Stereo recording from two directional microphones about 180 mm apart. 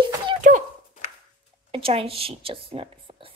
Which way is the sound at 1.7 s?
30° right (ahead or behind).